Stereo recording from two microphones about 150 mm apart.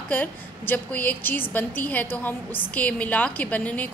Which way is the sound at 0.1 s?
10° left (ahead or behind).